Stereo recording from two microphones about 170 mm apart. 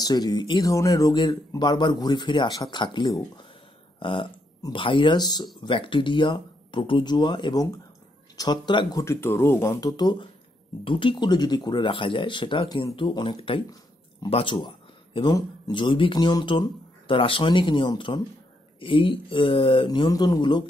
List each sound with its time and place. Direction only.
0.0 s a man's voice: 25° left (ahead or behind)